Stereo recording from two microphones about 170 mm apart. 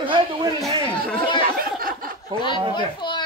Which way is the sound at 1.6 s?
60° right (ahead or behind).